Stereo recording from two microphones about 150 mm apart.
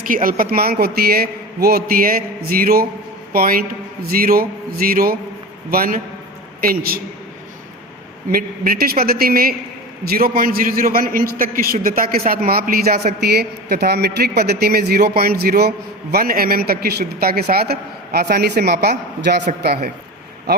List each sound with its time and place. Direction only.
0.0 s a man's voice: 65° right (ahead or behind)
8.3 s a man's voice: 80° right
16.1 s speech: 80° right